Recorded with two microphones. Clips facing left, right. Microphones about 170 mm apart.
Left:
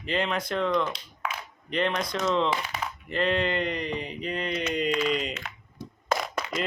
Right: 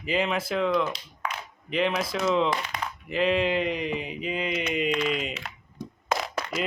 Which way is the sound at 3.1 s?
5° right (ahead or behind).